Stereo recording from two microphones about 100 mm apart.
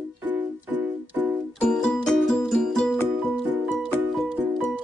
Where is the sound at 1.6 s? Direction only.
5° left (ahead or behind).